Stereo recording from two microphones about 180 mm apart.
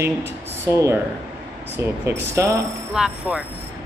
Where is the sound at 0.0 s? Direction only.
15° right (ahead or behind).